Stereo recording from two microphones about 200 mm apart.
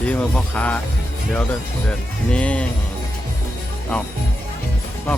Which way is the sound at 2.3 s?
5° left (ahead or behind).